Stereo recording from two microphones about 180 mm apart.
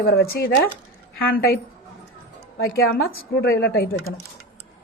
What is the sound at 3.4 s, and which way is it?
Speech, 65° left (ahead or behind).